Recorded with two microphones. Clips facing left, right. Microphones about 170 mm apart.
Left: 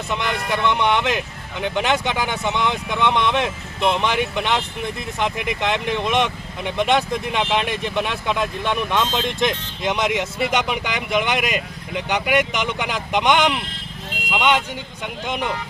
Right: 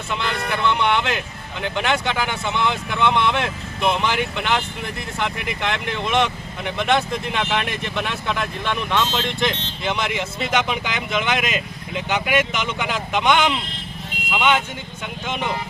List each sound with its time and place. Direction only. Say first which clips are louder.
0.1 s speech: left 1 dB; 15° left (ahead or behind)